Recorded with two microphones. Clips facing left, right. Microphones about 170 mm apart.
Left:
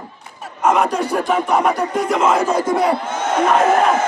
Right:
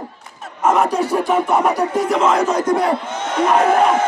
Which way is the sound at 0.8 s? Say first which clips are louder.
Right 1 dB; 5° right (ahead or behind).